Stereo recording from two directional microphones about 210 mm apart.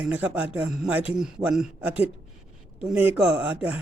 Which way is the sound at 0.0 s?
5° right (ahead or behind).